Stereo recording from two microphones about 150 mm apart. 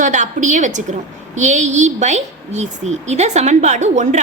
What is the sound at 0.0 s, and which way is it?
A woman's voice, 55° right (ahead or behind).